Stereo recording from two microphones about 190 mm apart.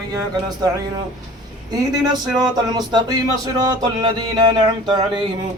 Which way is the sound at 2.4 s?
20° right (ahead or behind).